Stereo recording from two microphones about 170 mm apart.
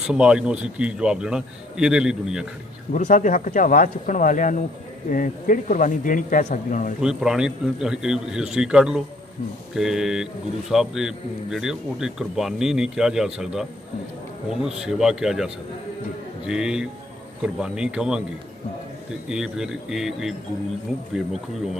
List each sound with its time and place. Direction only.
0.0 s speech: 5° right (ahead or behind)
2.9 s speech: 50° left (ahead or behind)
7.0 s speech: 5° right (ahead or behind)
19.2 s speech: 5° right (ahead or behind)